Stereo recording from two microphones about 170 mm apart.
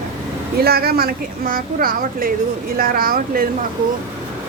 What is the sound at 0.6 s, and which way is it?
Speech, 65° right (ahead or behind).